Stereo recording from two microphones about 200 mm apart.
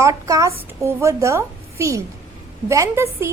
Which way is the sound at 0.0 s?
15° right (ahead or behind).